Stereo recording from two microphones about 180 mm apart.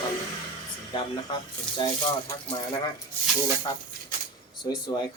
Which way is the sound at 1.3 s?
25° left (ahead or behind).